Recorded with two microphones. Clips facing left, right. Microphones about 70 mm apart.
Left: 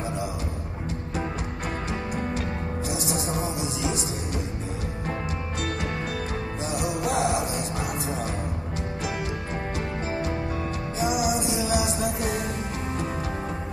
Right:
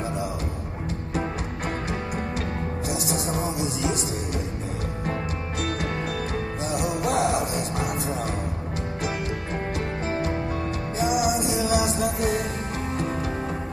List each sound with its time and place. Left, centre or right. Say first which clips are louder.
3.3 s music: right 2 dB; centre
6.8 s music: right 1 dB; right
11.1 s music: right 2 dB; right